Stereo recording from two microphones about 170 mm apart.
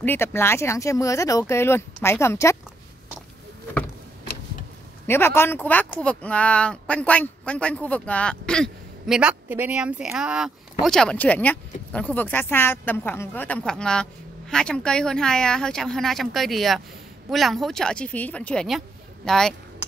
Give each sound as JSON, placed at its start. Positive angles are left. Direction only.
{"t": 0.0, "sound": "speech", "side_deg": 15}
{"t": 5.0, "sound": "speech", "side_deg": 15}